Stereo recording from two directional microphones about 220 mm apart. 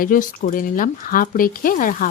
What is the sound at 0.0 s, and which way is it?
A woman's voice, 40° left (ahead or behind).